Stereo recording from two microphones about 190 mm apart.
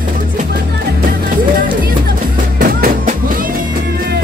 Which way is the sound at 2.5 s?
45° right (ahead or behind).